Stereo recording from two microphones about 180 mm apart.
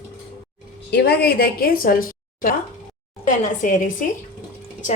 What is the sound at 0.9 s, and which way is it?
A woman's voice, 65° left (ahead or behind).